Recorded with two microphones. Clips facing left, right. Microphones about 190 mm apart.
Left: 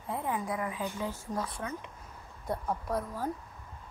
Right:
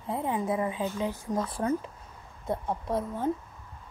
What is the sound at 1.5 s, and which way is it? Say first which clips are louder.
A woman's voice: right 10 dB; 30° right (ahead or behind).